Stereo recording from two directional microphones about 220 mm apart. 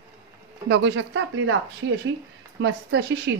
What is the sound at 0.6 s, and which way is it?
Speech, 60° right (ahead or behind).